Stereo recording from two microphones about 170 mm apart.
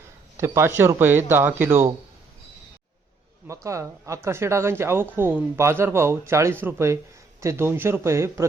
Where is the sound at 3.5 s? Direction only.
15° right (ahead or behind).